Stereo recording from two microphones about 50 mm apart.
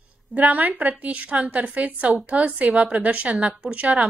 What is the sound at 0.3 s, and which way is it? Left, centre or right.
A woman's voice, right.